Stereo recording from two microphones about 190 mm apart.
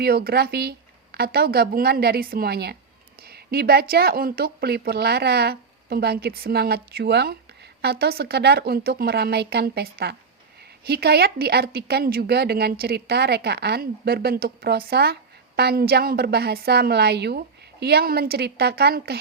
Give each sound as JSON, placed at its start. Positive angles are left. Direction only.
{"t": 0.0, "sound": "speech", "side_deg": -55}